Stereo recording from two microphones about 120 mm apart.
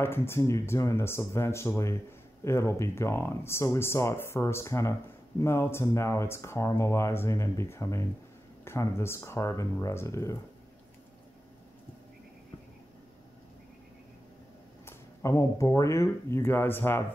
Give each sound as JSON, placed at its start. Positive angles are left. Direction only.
{"t": 0.0, "sound": "speech", "side_deg": 20}
{"t": 14.9, "sound": "speech", "side_deg": 25}